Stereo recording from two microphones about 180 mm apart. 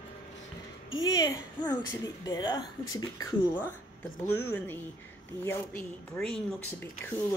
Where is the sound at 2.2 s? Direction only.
20° left (ahead or behind).